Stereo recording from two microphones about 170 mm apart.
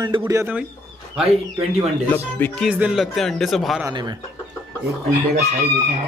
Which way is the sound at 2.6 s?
5° right (ahead or behind).